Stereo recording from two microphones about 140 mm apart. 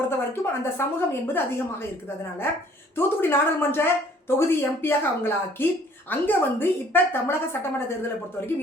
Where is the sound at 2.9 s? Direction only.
15° left (ahead or behind).